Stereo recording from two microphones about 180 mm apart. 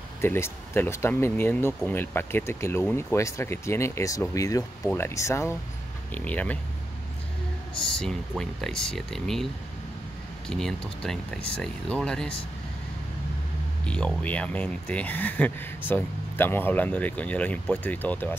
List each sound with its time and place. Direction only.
0.2 s speech: 15° left (ahead or behind)
8.0 s speech: 5° left (ahead or behind)
10.5 s speech: 5° left (ahead or behind)
13.8 s speech: 5° left (ahead or behind)